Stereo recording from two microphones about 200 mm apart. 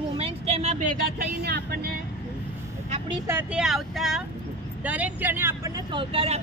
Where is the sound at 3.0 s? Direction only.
10° right (ahead or behind); by 6.4 s 30° right (ahead or behind).